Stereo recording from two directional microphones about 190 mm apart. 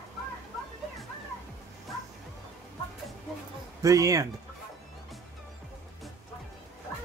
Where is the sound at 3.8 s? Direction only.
15° right (ahead or behind).